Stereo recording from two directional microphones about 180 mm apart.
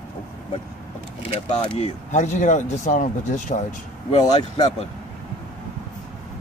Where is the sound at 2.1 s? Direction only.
45° left (ahead or behind).